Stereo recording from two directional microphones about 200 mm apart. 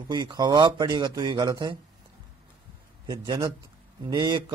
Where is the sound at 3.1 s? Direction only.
20° right (ahead or behind).